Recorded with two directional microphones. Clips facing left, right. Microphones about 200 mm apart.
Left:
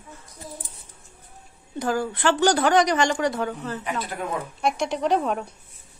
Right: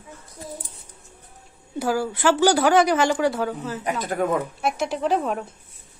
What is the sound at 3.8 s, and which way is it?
Speech, 45° right (ahead or behind).